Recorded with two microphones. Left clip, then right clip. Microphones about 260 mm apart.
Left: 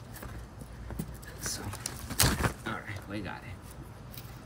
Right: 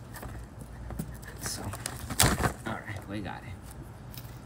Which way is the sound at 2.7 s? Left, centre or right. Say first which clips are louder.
Right 1 dB; centre.